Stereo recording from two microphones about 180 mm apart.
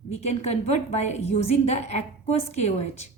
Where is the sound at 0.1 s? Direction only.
35° left (ahead or behind).